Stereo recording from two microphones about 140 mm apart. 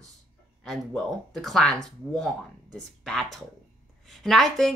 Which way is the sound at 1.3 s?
5° left (ahead or behind).